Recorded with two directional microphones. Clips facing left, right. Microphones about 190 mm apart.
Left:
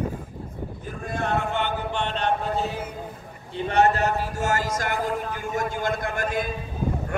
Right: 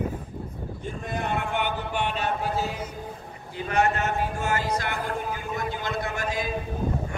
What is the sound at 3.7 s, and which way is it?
A man's voice, 35° left (ahead or behind).